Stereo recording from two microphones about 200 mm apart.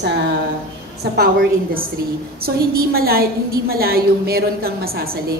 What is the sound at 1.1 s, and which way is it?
A woman's voice, 50° right (ahead or behind).